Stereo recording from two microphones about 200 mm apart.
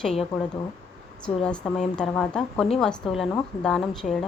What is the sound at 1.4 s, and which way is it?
A woman's voice, 5° left (ahead or behind).